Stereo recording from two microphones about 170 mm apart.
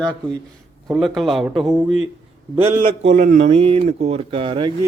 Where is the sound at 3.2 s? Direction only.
45° right (ahead or behind); by 4.7 s 30° right (ahead or behind).